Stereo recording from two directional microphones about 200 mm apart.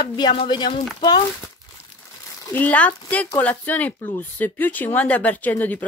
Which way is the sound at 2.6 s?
5° left (ahead or behind).